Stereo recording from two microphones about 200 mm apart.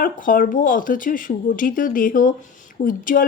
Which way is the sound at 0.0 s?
45° left (ahead or behind).